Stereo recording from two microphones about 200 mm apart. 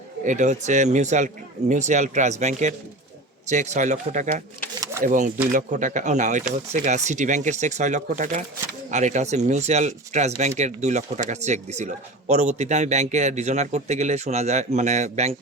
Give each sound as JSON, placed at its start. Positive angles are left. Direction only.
{"t": 0.3, "sound": "a man's voice", "side_deg": -35}